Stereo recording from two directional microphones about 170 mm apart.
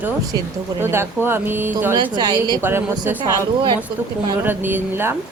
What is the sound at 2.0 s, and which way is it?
Speech, 25° right (ahead or behind).